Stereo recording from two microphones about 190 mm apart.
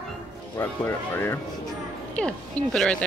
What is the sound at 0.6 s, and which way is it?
Speech, 10° left (ahead or behind).